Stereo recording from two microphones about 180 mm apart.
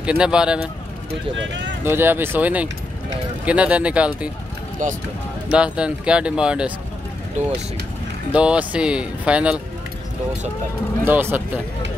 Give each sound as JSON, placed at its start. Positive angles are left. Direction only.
{"t": 0.0, "sound": "speech", "side_deg": -5}
{"t": 1.3, "sound": "speech", "side_deg": -90}
{"t": 1.9, "sound": "speech", "side_deg": -10}
{"t": 4.8, "sound": "speech", "side_deg": -45}
{"t": 5.5, "sound": "speech", "side_deg": -5}
{"t": 8.3, "sound": "speech", "side_deg": -5}
{"t": 11.1, "sound": "speech", "side_deg": -10}